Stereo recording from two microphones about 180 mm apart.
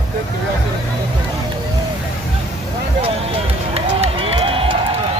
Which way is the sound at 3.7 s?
35° right (ahead or behind).